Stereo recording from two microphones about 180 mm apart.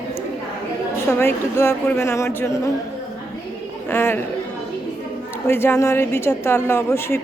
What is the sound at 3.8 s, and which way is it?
Speech, 15° left (ahead or behind).